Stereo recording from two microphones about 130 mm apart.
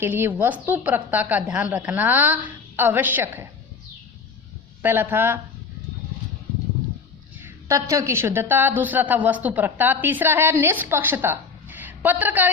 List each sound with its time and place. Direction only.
0.0 s a woman's voice: 15° right (ahead or behind)
4.8 s a woman's voice: 15° right (ahead or behind)
7.4 s a woman's voice: 25° right (ahead or behind)